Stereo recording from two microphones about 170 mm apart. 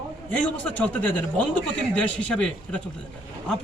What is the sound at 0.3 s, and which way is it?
A man's voice, 10° left (ahead or behind).